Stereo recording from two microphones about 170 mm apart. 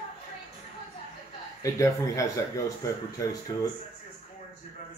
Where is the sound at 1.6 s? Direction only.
20° left (ahead or behind).